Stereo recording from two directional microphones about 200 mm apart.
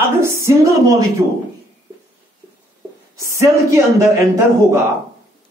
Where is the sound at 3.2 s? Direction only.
15° right (ahead or behind).